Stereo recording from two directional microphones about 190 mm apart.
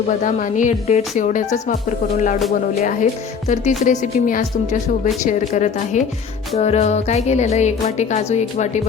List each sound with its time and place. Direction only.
0.1 s speech: 40° left (ahead or behind)
2.1 s music: 40° left (ahead or behind)
3.5 s speech: 40° left (ahead or behind)